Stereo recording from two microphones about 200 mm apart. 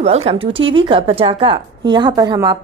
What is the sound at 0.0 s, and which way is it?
A woman's voice, 30° right (ahead or behind).